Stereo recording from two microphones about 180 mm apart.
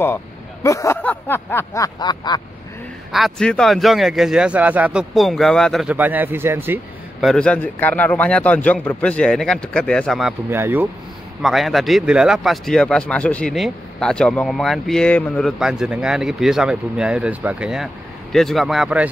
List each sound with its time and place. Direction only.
0.7 s a sound: 15° left (ahead or behind)
3.1 s speech: centre (ahead or behind)
7.2 s speech: centre (ahead or behind)
10.5 s speech: 10° right (ahead or behind)
11.4 s speech: centre (ahead or behind)